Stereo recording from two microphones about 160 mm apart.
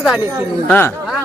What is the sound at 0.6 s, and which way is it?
Speech, 15° left (ahead or behind).